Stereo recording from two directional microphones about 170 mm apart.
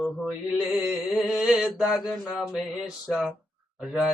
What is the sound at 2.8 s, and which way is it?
Mantra, 5° right (ahead or behind).